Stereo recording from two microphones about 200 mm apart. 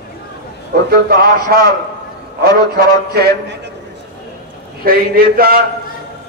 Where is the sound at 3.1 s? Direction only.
55° right (ahead or behind).